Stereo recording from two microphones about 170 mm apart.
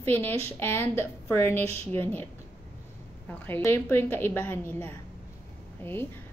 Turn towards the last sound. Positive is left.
turn(degrees=10)  # may be behind; listen again after turning